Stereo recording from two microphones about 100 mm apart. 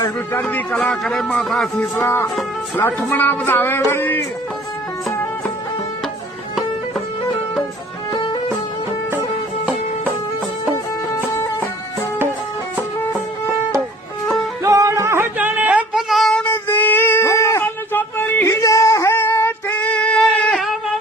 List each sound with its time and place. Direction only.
0.4 s a man's voice: 15° left (ahead or behind)
2.0 s speech: 25° left (ahead or behind)
14.6 s music: 30° right (ahead or behind); by 16.0 s 15° right (ahead or behind)
16.0 s music: centre (ahead or behind)
16.6 s a sound: 20° left (ahead or behind)
17.6 s a sound: 20° left (ahead or behind)